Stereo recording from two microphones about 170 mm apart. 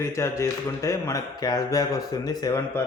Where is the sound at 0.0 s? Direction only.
15° left (ahead or behind).